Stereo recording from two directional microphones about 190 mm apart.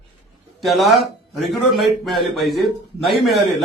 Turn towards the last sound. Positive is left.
turn(degrees=0)  # may be behind; listen again after turning